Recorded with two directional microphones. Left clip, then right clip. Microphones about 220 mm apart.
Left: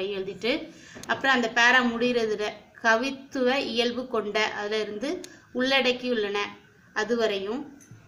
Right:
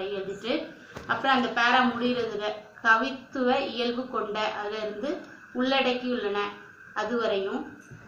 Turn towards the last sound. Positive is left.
turn(degrees=45)  # may be behind; listen again after turning